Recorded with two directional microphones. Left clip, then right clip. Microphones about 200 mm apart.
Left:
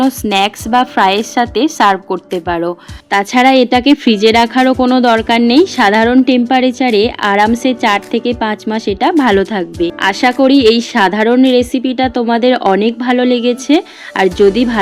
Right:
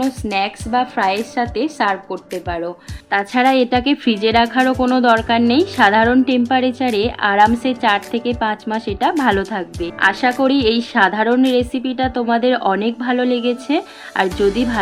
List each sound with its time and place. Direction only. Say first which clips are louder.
0.0 s a woman's voice: left 7 dB; 50° left (ahead or behind)
3.1 s speech: left 6 dB; 30° left (ahead or behind)